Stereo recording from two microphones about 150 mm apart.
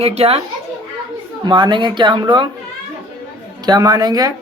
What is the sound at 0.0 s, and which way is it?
Speech, 45° right (ahead or behind).